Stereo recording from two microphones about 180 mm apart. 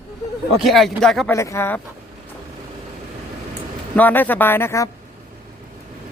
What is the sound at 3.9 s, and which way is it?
Speech, 10° left (ahead or behind).